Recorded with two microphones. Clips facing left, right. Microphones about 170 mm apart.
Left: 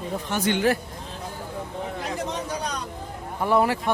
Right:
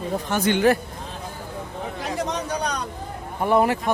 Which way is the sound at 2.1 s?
70° right (ahead or behind).